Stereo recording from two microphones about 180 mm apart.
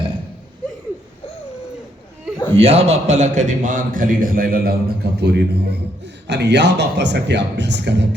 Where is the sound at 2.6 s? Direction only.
35° right (ahead or behind).